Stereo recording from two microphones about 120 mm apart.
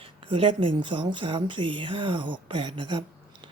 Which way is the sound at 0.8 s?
40° right (ahead or behind).